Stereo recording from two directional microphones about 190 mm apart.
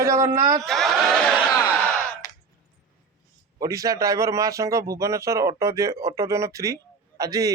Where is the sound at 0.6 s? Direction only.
Centre (ahead or behind).